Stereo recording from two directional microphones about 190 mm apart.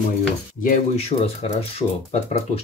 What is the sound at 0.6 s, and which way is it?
Speech, 40° left (ahead or behind).